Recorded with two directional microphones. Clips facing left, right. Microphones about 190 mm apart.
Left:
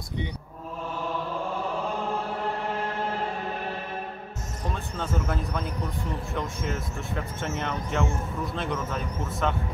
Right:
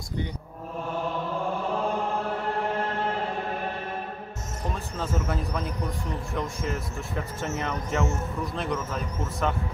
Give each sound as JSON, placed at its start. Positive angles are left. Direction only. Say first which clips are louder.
{"t": 4.9, "sound": "speech", "louder": "even", "side_deg": 0}